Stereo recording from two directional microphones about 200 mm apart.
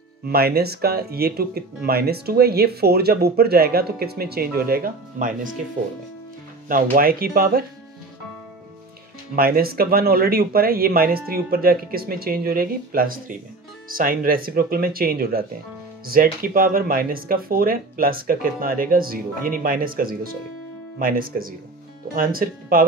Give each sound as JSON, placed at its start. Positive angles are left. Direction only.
{"t": 0.3, "sound": "speech", "side_deg": -50}
{"t": 6.7, "sound": "speech", "side_deg": -45}
{"t": 9.3, "sound": "speech", "side_deg": -45}